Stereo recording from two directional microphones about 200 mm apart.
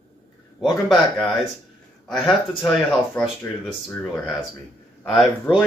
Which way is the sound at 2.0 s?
Centre (ahead or behind).